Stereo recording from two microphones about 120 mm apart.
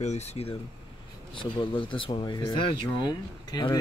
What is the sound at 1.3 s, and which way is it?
Speech, 45° left (ahead or behind).